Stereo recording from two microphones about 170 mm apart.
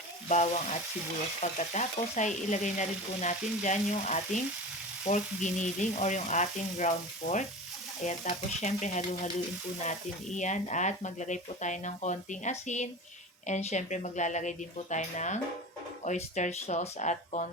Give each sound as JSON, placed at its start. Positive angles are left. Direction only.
{"t": 0.3, "sound": "speech", "side_deg": 45}